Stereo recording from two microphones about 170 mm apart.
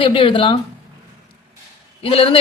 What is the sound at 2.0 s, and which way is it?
Speech, 35° left (ahead or behind).